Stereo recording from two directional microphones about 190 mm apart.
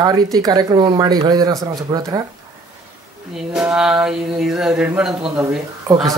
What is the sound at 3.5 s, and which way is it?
Speech, 5° right (ahead or behind).